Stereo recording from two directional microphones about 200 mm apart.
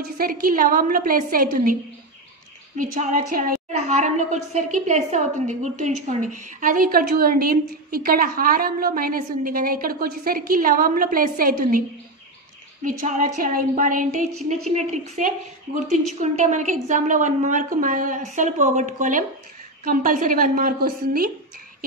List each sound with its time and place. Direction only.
0.0 s a woman's voice: 45° right (ahead or behind)
2.8 s a woman's voice: 40° right (ahead or behind)
13.0 s a woman's voice: 40° right (ahead or behind)